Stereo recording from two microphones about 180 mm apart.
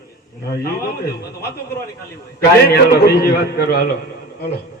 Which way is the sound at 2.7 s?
60° left (ahead or behind).